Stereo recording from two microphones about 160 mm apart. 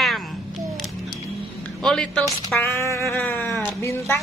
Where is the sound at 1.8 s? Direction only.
5° left (ahead or behind).